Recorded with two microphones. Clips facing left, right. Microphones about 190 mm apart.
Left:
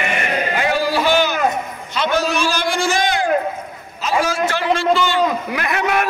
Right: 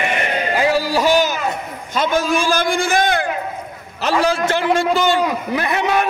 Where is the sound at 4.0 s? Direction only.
70° right (ahead or behind).